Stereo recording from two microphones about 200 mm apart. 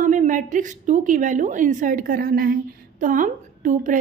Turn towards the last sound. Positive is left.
turn(degrees=-40)  # may be behind; listen again after turning